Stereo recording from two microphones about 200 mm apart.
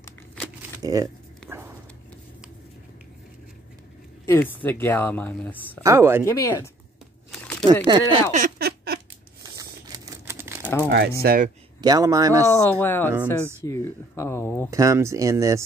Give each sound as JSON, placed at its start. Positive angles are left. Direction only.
{"t": 0.7, "sound": "speech", "side_deg": -15}
{"t": 4.3, "sound": "speech", "side_deg": 10}
{"t": 5.8, "sound": "speech", "side_deg": -15}
{"t": 6.2, "sound": "speech", "side_deg": 15}
{"t": 7.2, "sound": "crumpling", "side_deg": 5}
{"t": 7.6, "sound": "speech", "side_deg": -20}
{"t": 8.3, "sound": "a sound", "side_deg": -45}
{"t": 9.4, "sound": "a sound", "side_deg": -15}
{"t": 10.9, "sound": "speech", "side_deg": -50}
{"t": 11.8, "sound": "speech", "side_deg": -20}
{"t": 12.4, "sound": "speech", "side_deg": 15}
{"t": 14.7, "sound": "speech", "side_deg": -15}